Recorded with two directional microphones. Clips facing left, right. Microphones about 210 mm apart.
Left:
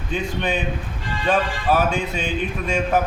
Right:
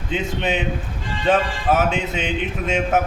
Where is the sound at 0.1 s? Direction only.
20° right (ahead or behind).